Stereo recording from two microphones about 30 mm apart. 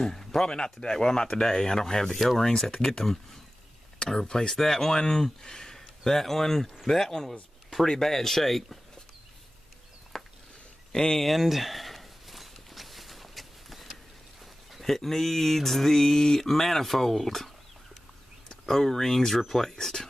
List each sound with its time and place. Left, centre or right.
0.0 s a sound: centre
0.4 s speech: left
4.3 s speech: left
4.6 s speech: centre
10.1 s a sound: centre
10.9 s speech: centre
11.1 s walk: centre
14.4 s a sound: centre
14.9 s speech: centre
18.7 s speech: centre